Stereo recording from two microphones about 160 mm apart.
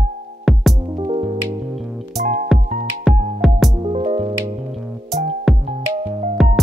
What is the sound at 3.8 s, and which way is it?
Music, 40° right (ahead or behind).